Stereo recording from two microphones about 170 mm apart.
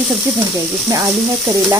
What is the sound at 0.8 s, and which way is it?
Stir, 20° right (ahead or behind).